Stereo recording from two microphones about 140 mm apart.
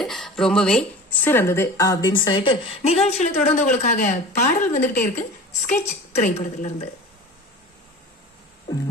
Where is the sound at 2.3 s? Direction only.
40° left (ahead or behind); by 5.2 s 70° left (ahead or behind).